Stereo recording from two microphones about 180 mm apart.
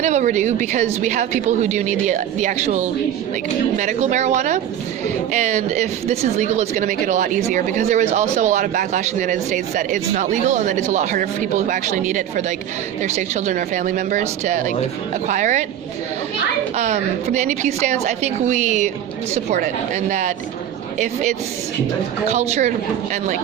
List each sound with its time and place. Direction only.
0.0 s speech: 40° right (ahead or behind)
16.7 s speech: 40° right (ahead or behind)
22.3 s speech: 40° right (ahead or behind)